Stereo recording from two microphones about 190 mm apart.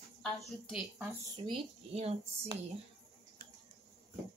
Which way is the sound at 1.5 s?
35° right (ahead or behind).